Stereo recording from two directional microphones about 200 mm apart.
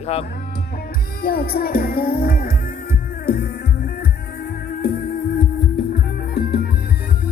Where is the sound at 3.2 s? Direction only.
50° left (ahead or behind).